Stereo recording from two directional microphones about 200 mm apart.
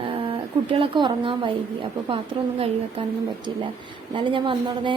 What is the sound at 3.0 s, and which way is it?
Speech, 25° right (ahead or behind).